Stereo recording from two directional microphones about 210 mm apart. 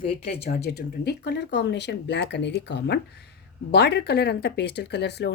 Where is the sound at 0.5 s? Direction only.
50° left (ahead or behind).